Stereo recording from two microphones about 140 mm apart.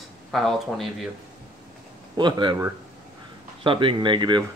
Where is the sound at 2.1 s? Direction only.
35° right (ahead or behind).